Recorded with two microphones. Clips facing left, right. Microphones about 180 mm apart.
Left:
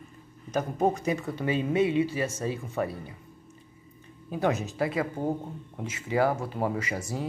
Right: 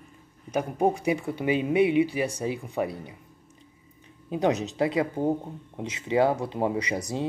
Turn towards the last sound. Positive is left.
turn(degrees=-20)  # may be behind; listen again after turning